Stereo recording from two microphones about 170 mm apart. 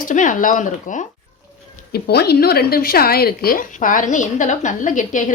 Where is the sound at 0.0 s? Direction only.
50° left (ahead or behind).